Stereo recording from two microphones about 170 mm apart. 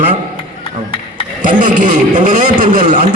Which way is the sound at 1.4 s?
50° right (ahead or behind).